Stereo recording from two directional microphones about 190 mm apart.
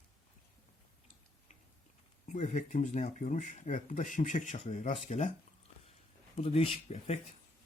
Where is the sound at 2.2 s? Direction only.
40° left (ahead or behind).